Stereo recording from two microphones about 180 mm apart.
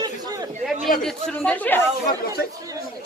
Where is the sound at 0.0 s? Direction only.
20° right (ahead or behind).